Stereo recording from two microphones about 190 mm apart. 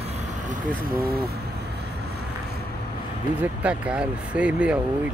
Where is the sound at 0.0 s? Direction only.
35° right (ahead or behind).